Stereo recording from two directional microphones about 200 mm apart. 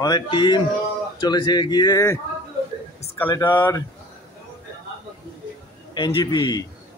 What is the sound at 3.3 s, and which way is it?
Speech, 10° left (ahead or behind).